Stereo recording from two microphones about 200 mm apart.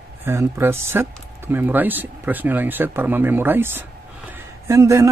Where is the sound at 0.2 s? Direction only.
10° right (ahead or behind).